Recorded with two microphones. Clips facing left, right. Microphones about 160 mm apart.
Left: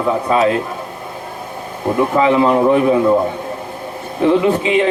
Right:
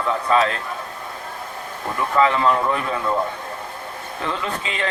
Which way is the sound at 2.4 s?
35° left (ahead or behind).